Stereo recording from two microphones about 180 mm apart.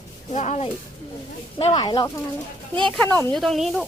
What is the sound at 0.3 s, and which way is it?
Speech, 40° left (ahead or behind).